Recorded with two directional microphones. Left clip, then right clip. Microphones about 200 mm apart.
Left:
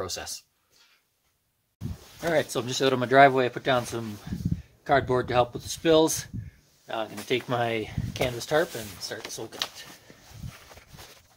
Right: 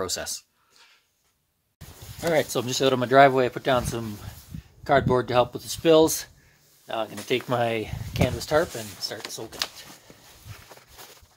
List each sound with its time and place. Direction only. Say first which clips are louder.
0.0 s speech: right 4 dB; 35° right (ahead or behind)
2.2 s speech: right 2 dB; 20° right (ahead or behind)